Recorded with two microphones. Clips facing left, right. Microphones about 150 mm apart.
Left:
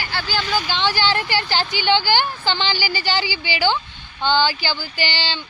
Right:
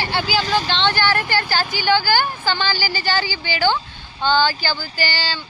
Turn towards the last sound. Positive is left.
turn(degrees=20)  # may be behind; listen again after turning